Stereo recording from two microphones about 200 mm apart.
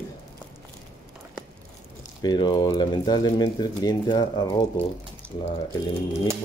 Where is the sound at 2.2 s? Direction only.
20° left (ahead or behind).